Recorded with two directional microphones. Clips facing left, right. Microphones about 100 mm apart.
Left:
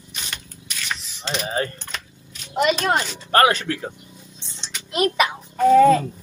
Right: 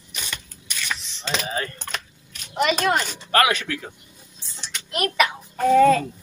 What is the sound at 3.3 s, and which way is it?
Speech, 35° left (ahead or behind).